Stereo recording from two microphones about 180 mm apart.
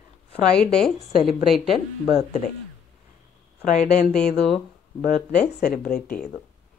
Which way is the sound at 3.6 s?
45° left (ahead or behind).